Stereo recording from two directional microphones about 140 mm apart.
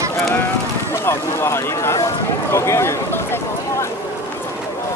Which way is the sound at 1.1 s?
20° left (ahead or behind).